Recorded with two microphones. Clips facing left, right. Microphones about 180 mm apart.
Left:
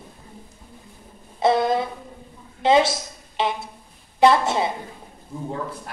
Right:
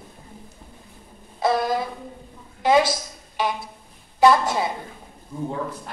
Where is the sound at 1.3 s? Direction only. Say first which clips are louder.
Left 3 dB; 25° left (ahead or behind).